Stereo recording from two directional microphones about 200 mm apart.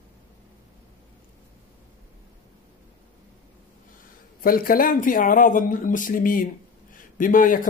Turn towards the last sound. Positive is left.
turn(degrees=45)  # may be behind; listen again after turning